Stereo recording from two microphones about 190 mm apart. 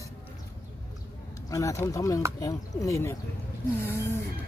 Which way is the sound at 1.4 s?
15° left (ahead or behind).